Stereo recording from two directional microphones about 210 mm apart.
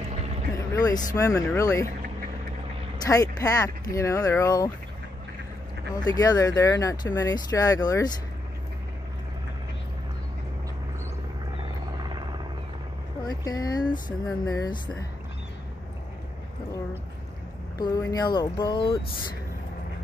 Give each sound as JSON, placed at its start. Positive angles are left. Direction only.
{"t": 0.7, "sound": "speech", "side_deg": 15}
{"t": 3.1, "sound": "speech", "side_deg": 15}
{"t": 5.9, "sound": "speech", "side_deg": 20}
{"t": 13.2, "sound": "speech", "side_deg": 20}
{"t": 17.7, "sound": "speech", "side_deg": 20}